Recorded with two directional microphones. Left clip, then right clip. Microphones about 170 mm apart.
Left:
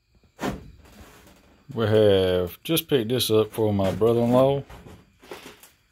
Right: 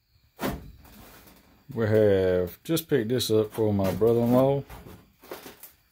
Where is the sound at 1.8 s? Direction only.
Centre (ahead or behind).